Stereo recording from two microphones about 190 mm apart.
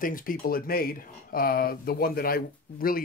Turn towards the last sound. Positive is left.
turn(degrees=50)  # may be behind; listen again after turning